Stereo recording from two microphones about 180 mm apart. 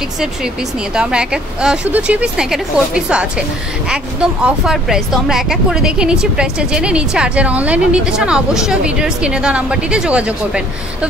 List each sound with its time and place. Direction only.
0.9 s speech: 5° right (ahead or behind)